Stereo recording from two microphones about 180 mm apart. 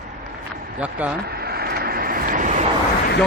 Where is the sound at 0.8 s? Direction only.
5° right (ahead or behind).